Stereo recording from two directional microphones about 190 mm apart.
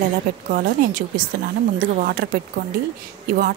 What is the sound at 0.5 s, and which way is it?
Speech, 45° right (ahead or behind).